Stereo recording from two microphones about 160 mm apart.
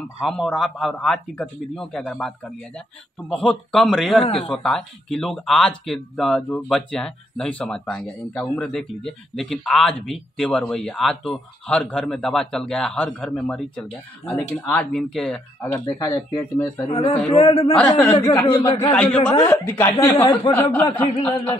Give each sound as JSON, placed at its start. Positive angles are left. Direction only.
{"t": 0.2, "sound": "speech", "side_deg": 0}
{"t": 15.6, "sound": "speech", "side_deg": 20}
{"t": 16.9, "sound": "a man's voice", "side_deg": 40}
{"t": 17.7, "sound": "a woman's voice", "side_deg": 10}
{"t": 18.6, "sound": "a man's voice", "side_deg": 20}
{"t": 19.5, "sound": "a woman's voice", "side_deg": 10}